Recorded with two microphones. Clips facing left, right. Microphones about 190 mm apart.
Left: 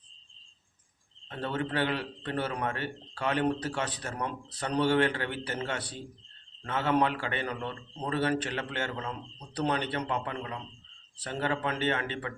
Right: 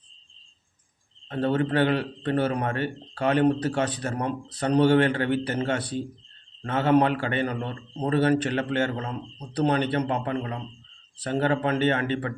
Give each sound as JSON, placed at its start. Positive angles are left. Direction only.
{"t": 1.3, "sound": "a man's voice", "side_deg": -45}